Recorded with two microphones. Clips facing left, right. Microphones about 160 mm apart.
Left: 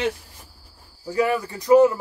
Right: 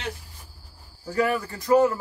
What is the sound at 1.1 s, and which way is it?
Speech, 15° left (ahead or behind).